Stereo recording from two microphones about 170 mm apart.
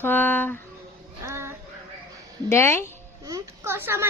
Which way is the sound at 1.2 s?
15° right (ahead or behind).